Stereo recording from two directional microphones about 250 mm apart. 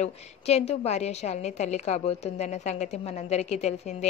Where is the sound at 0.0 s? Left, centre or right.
Left.